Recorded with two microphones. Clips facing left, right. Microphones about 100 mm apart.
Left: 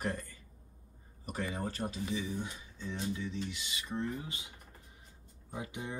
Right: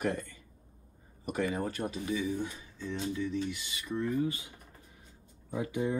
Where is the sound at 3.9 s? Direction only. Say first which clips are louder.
Right 7 dB; 25° left (ahead or behind).